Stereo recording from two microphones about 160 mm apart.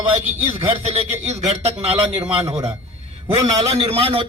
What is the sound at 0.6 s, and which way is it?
A man's voice, 35° right (ahead or behind).